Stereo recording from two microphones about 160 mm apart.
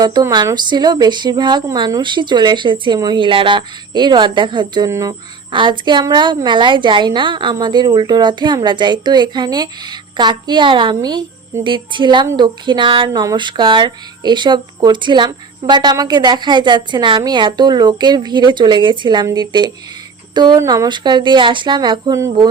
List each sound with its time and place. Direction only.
0.0 s speech: 25° right (ahead or behind)